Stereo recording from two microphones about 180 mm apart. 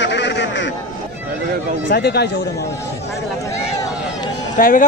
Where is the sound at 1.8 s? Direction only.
65° left (ahead or behind).